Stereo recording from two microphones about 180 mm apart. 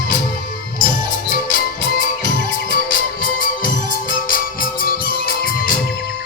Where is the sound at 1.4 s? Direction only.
50° left (ahead or behind).